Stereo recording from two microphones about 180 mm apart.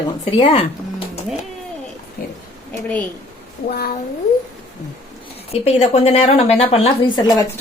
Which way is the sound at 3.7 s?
55° left (ahead or behind).